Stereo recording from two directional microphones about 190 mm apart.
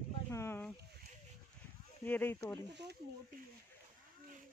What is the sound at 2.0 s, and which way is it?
Speech, 10° left (ahead or behind).